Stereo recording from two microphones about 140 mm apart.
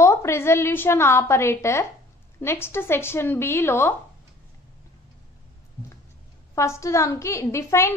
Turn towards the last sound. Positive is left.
turn(degrees=20)  # may be behind; listen again after turning